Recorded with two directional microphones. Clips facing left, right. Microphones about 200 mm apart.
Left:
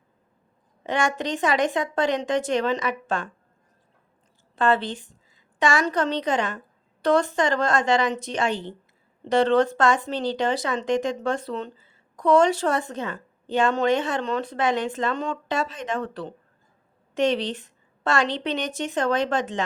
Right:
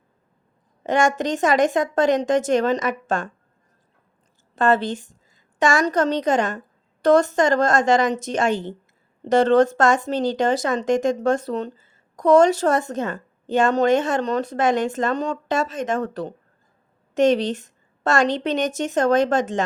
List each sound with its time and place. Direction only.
0.9 s speech: 45° right (ahead or behind)
4.5 s a woman's voice: 45° right (ahead or behind)